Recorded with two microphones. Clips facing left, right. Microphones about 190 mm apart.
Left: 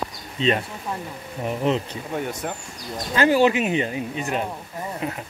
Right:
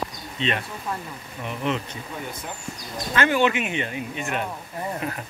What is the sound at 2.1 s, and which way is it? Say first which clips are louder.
Speech: left 8 dB; 70° left (ahead or behind).